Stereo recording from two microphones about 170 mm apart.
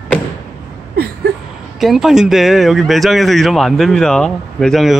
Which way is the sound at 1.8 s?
Centre (ahead or behind).